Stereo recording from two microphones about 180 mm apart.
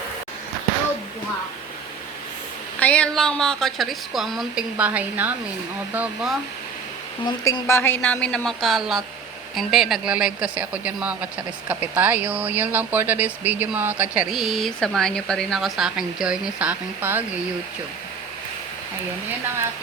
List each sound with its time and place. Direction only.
2.7 s a woman's voice: 5° left (ahead or behind); by 6.3 s 10° right (ahead or behind)
7.3 s speech: 25° left (ahead or behind)
7.7 s a woman's voice: 10° left (ahead or behind); by 17.2 s 10° right (ahead or behind)